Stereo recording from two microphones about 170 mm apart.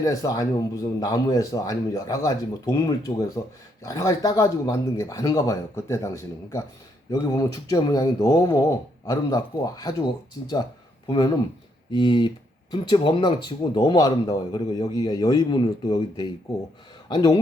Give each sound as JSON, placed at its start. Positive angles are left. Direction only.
{"t": 0.0, "sound": "speech", "side_deg": 20}
{"t": 11.9, "sound": "speech", "side_deg": 25}